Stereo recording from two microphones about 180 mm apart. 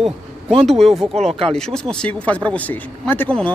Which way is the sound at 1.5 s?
5° left (ahead or behind).